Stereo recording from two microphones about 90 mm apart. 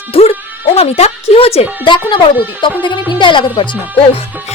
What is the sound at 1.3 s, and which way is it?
Music, 90° left.